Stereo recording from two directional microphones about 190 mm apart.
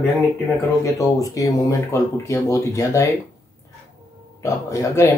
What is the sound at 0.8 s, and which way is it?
Speech, 15° left (ahead or behind).